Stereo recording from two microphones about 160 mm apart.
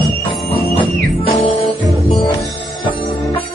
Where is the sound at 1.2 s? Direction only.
35° left (ahead or behind).